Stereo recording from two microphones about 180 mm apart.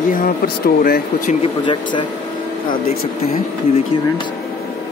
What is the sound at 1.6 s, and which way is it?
Speech, 25° left (ahead or behind).